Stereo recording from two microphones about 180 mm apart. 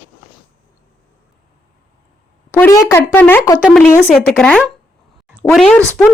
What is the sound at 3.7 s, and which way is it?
Speech, 5° left (ahead or behind).